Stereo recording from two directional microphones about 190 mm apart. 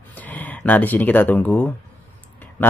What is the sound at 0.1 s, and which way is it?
Speech, 10° left (ahead or behind).